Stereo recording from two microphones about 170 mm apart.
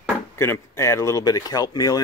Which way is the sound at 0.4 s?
15° left (ahead or behind).